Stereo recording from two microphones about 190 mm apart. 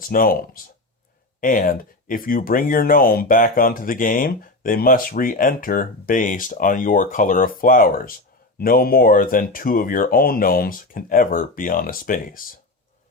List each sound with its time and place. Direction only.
0.0 s speech: 50° left (ahead or behind)